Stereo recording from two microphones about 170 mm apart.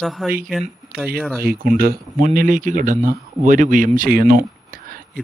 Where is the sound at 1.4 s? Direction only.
60° right (ahead or behind).